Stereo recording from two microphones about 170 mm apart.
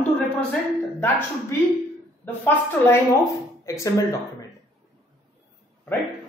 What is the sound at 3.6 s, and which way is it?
Speech, 20° left (ahead or behind).